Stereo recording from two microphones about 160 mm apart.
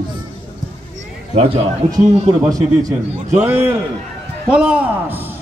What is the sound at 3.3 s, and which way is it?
A man's voice, 15° right (ahead or behind).